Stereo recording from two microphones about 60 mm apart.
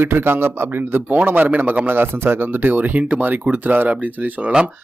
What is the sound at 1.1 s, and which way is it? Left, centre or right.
Speech, right.